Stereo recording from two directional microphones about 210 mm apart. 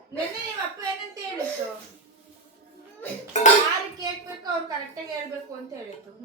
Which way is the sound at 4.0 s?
20° right (ahead or behind).